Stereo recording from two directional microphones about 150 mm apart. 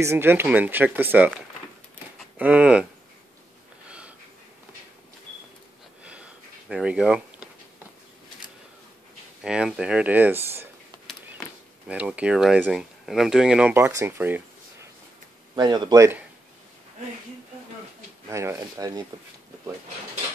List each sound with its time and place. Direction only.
0.0 s speech: 15° right (ahead or behind)
6.7 s speech: 5° right (ahead or behind)
9.4 s speech: 5° right (ahead or behind)
11.9 s speech: 10° right (ahead or behind)
15.5 s speech: 30° right (ahead or behind)
18.3 s speech: 20° right (ahead or behind)